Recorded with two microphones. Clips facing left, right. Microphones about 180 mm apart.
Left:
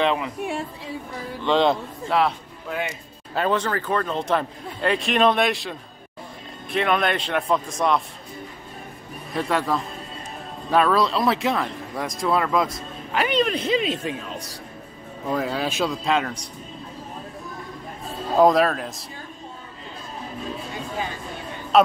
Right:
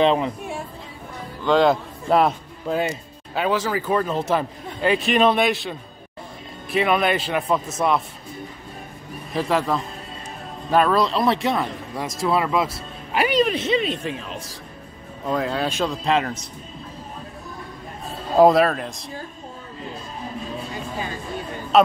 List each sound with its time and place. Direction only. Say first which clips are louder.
0.0 s speech: right 4 dB; 25° right (ahead or behind)
1.4 s speech: right 2 dB; centre (ahead or behind)
2.0 s a man's voice: right 4 dB; 40° right (ahead or behind)
3.3 s speech: right 1 dB; centre (ahead or behind)
9.3 s speech: right 2 dB; centre (ahead or behind)
18.4 s speech: right 2 dB; centre (ahead or behind)
21.7 s a sound: right 1 dB; centre (ahead or behind)